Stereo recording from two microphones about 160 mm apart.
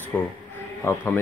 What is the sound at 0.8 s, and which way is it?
Speech, 15° left (ahead or behind).